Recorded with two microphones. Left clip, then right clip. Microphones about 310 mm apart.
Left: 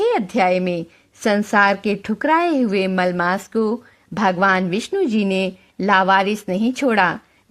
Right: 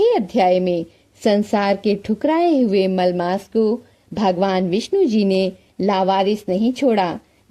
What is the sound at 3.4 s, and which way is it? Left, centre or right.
Speech, left.